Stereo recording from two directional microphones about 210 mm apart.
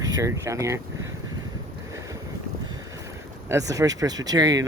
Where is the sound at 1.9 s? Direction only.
15° right (ahead or behind).